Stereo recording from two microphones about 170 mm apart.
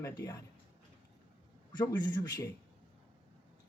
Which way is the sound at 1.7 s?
25° left (ahead or behind).